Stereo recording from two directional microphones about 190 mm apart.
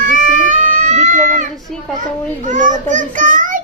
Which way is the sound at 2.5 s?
40° right (ahead or behind).